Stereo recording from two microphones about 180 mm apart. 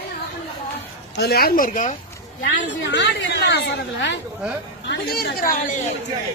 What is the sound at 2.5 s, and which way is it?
A woman's voice, 80° left.